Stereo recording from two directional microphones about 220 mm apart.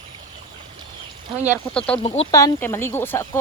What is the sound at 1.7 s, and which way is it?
Speech, 5° left (ahead or behind).